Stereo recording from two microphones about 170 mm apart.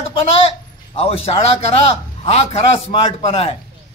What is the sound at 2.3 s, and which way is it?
A man's voice, 35° left (ahead or behind).